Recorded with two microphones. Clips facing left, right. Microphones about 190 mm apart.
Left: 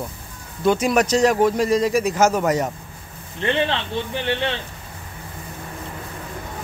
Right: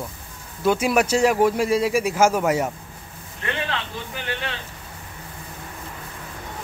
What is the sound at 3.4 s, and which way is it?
Speech, 30° left (ahead or behind).